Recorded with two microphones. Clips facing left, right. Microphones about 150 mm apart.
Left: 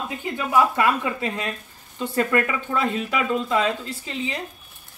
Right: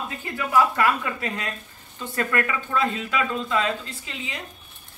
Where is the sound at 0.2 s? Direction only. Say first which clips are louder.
Left 1 dB; 20° left (ahead or behind).